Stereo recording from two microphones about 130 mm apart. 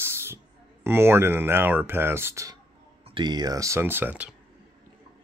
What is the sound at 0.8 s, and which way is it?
Speech, 20° right (ahead or behind).